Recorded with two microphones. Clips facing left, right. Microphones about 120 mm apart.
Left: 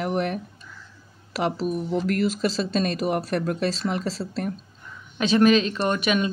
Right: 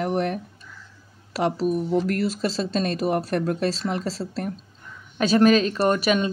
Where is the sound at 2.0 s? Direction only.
35° right (ahead or behind).